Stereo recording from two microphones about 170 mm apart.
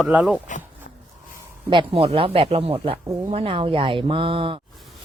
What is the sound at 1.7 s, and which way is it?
Speech, 30° right (ahead or behind).